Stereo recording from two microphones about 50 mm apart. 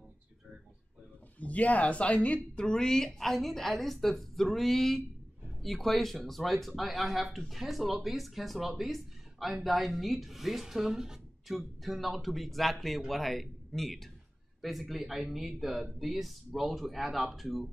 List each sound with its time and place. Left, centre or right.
1.4 s speech: left; by 17.6 s centre